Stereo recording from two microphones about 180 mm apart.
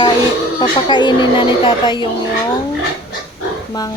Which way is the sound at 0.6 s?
25° left (ahead or behind).